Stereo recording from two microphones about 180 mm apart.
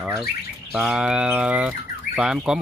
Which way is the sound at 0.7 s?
5° right (ahead or behind).